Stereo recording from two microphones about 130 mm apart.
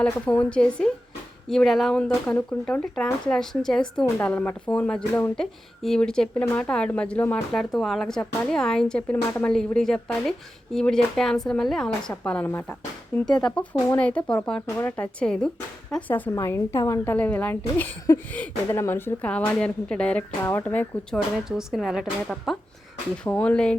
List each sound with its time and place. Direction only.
0.0 s a woman's voice: 10° left (ahead or behind)
13.2 s a woman's voice: 5° left (ahead or behind); by 17.2 s 20° left (ahead or behind)
17.2 s speech: 10° left (ahead or behind)
21.7 s a woman's voice: centre (ahead or behind)
23.2 s speech: 10° left (ahead or behind)